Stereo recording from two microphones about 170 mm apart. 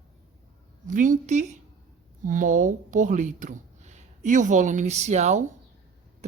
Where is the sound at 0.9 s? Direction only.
50° right (ahead or behind).